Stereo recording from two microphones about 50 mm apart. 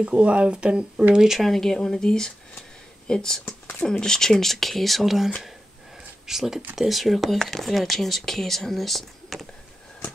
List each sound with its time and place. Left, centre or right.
0.0 s speech: right
1.4 s speech: centre